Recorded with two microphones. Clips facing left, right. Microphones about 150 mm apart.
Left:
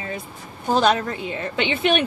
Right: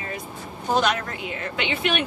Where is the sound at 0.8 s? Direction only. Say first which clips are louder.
Left 5 dB; 30° left (ahead or behind).